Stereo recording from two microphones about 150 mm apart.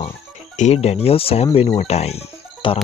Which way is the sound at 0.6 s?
45° left (ahead or behind).